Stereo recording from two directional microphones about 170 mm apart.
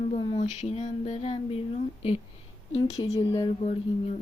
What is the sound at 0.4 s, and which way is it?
Speech, 40° left (ahead or behind).